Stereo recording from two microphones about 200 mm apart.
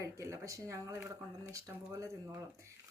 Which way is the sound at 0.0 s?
15° right (ahead or behind).